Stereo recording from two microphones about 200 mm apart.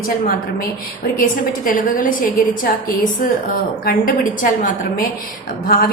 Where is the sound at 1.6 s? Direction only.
45° left (ahead or behind).